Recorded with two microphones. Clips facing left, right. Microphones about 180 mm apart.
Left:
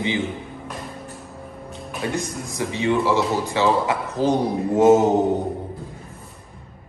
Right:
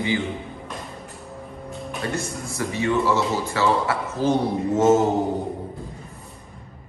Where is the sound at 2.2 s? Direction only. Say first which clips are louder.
Left 1 dB; 15° left (ahead or behind).